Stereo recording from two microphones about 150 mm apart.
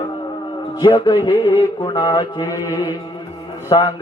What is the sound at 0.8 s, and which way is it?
Music, 30° left (ahead or behind).